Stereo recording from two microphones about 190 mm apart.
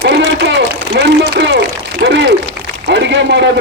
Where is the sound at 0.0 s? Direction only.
70° right (ahead or behind).